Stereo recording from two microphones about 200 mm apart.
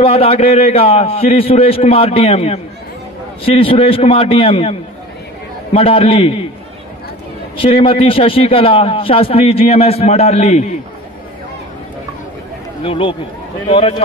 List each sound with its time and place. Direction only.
0.0 s a man's voice: 30° left (ahead or behind)
7.5 s a man's voice: 30° left (ahead or behind)
12.8 s a man's voice: 25° left (ahead or behind)